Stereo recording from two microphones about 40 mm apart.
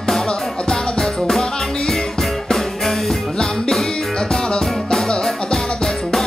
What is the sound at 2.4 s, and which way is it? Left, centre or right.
Music, centre.